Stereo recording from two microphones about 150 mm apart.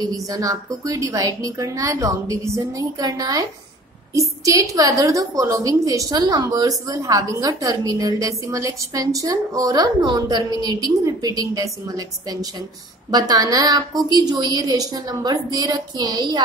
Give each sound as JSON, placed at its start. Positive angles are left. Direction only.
{"t": 0.1, "sound": "a woman's voice", "side_deg": -25}